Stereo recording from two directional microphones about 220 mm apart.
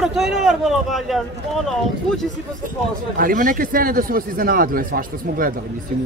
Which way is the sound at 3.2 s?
40° right (ahead or behind).